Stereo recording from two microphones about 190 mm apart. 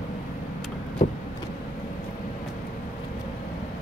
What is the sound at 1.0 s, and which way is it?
Vehicle, 40° left (ahead or behind).